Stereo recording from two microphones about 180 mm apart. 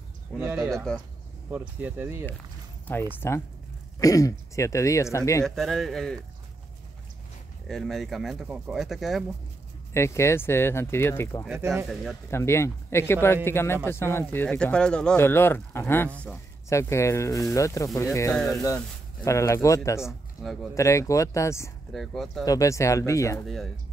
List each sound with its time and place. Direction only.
0.4 s speech: 15° right (ahead or behind)
3.1 s speech: 15° left (ahead or behind)
5.4 s speech: centre (ahead or behind)
7.6 s speech: centre (ahead or behind)
9.9 s speech: 15° left (ahead or behind)
11.4 s speech: 10° right (ahead or behind)
11.9 s speech: centre (ahead or behind)
12.3 s speech: 15° left (ahead or behind)
20.0 s speech: centre (ahead or behind)
20.7 s speech: 15° left (ahead or behind)
21.9 s speech: centre (ahead or behind)
22.4 s speech: 20° left (ahead or behind)
23.4 s speech: centre (ahead or behind)